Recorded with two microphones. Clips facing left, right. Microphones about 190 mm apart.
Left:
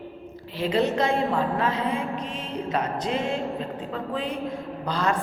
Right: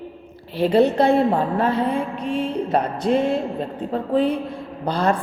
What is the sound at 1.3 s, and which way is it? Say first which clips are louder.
Speech: right 4 dB; 30° right (ahead or behind).